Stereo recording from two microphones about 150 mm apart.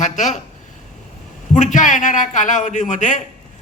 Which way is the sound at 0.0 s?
55° left (ahead or behind).